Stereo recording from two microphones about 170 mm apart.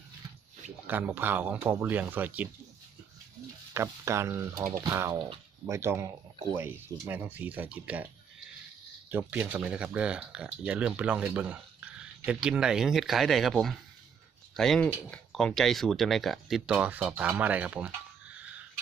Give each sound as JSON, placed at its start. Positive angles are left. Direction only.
{"t": 0.9, "sound": "speech", "side_deg": -10}
{"t": 3.8, "sound": "speech", "side_deg": -15}
{"t": 9.0, "sound": "speech", "side_deg": -10}